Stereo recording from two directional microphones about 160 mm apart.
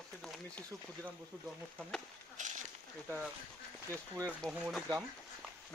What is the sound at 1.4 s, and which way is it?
Speech, 5° left (ahead or behind).